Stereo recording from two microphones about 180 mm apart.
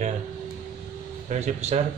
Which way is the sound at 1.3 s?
40° right (ahead or behind).